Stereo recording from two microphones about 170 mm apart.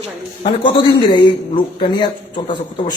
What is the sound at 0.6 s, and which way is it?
A man's voice, 30° left (ahead or behind).